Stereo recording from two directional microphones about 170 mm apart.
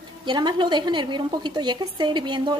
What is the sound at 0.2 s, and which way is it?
A woman's voice, 25° right (ahead or behind).